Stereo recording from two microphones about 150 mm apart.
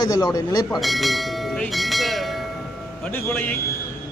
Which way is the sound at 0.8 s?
Centre (ahead or behind).